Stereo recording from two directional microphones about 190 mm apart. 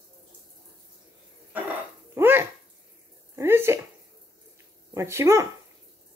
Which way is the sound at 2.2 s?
10° right (ahead or behind).